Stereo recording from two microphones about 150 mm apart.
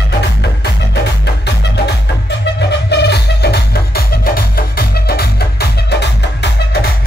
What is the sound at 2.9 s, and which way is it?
Music, 90° left.